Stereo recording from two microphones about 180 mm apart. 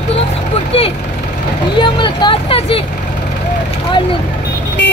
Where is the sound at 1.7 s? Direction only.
25° left (ahead or behind).